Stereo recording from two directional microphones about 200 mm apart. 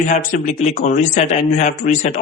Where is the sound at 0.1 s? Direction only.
40° left (ahead or behind).